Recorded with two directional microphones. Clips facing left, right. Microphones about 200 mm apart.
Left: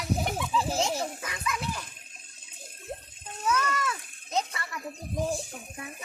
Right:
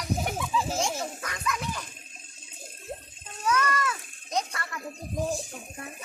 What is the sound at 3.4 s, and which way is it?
Children playing, 5° left (ahead or behind).